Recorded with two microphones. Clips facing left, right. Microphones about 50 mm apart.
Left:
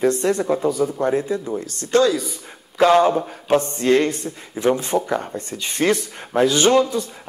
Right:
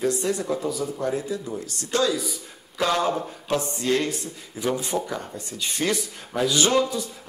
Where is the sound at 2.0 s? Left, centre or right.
Centre.